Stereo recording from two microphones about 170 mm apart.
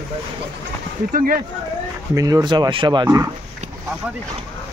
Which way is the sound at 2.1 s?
20° right (ahead or behind).